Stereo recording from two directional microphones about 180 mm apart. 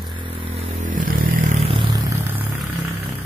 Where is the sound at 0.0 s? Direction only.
25° right (ahead or behind).